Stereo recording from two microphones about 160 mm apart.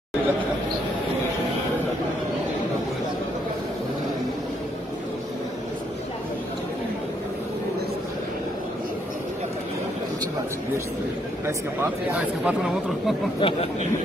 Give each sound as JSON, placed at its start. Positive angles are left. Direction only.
{"t": 11.4, "sound": "speech", "side_deg": -10}
{"t": 13.4, "sound": "speech", "side_deg": 35}